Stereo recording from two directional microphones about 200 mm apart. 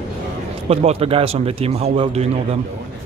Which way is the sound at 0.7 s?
30° right (ahead or behind).